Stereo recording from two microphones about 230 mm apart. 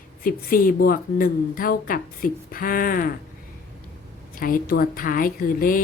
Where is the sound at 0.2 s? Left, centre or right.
Left.